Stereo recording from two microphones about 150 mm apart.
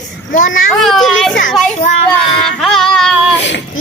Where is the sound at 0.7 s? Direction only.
Centre (ahead or behind).